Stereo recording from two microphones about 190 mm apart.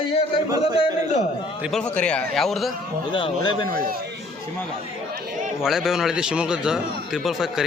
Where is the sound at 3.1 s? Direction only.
25° left (ahead or behind).